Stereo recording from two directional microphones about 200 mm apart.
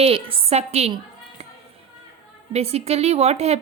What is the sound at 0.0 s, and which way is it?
Speech, 30° right (ahead or behind).